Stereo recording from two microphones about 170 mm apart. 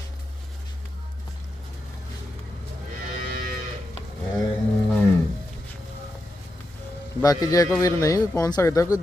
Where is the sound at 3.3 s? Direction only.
60° right (ahead or behind).